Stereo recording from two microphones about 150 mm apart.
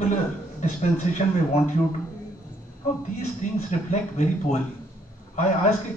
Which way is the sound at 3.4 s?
55° left (ahead or behind).